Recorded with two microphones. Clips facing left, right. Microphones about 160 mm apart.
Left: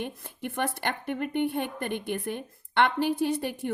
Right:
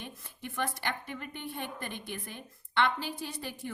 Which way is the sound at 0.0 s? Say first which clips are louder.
Left 9 dB; 60° left (ahead or behind).